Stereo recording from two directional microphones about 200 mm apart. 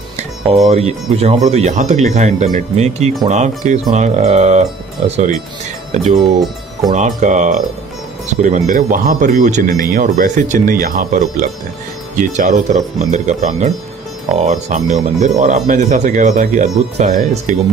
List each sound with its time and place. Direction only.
0.5 s speech: 30° right (ahead or behind)